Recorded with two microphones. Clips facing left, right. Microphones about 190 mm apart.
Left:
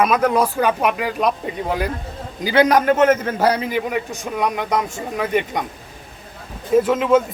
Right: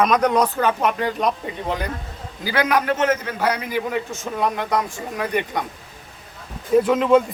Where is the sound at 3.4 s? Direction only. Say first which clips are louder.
Left 4 dB; 35° left (ahead or behind).